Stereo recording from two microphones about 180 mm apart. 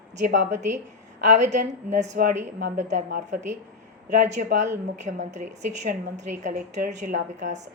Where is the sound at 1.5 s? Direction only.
40° right (ahead or behind).